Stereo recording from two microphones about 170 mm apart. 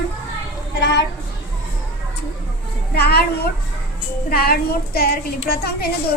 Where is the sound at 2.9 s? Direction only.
70° left (ahead or behind).